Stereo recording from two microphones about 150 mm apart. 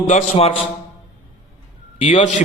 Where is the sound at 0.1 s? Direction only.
50° left (ahead or behind).